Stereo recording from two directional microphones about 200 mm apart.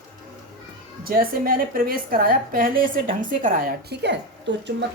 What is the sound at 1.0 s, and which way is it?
A woman's voice, 45° right (ahead or behind).